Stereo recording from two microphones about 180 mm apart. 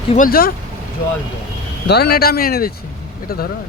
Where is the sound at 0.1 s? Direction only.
50° left (ahead or behind).